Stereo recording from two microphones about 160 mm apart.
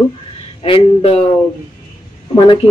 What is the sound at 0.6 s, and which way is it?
Speech, 35° left (ahead or behind).